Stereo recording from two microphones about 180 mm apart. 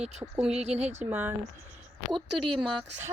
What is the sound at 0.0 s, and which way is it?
Speech, 35° right (ahead or behind).